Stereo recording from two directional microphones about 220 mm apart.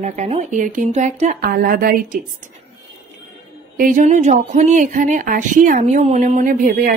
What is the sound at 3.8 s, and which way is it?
Speech, 35° right (ahead or behind).